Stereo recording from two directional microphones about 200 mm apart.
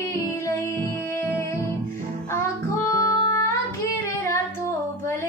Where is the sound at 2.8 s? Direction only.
15° left (ahead or behind).